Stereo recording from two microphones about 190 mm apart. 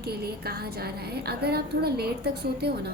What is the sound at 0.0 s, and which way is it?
A woman's voice, 55° right (ahead or behind).